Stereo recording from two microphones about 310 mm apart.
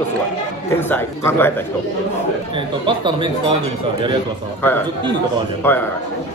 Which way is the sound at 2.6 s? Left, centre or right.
Centre.